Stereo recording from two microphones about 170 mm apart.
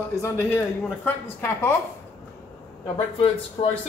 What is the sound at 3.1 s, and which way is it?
Speech, 35° left (ahead or behind).